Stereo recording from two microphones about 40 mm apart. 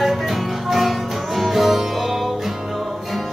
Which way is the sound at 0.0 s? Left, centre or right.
Centre.